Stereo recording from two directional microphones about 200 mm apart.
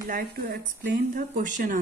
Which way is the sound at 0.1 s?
50° right (ahead or behind).